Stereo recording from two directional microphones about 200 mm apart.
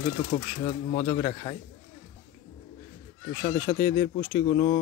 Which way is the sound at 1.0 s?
25° left (ahead or behind).